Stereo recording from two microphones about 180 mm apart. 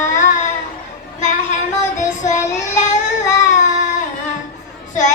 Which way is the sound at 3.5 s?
40° left (ahead or behind).